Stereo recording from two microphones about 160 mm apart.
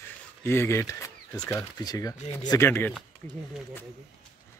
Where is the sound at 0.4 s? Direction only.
15° left (ahead or behind).